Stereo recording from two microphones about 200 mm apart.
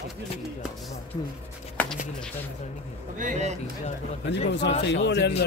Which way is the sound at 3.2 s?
40° right (ahead or behind).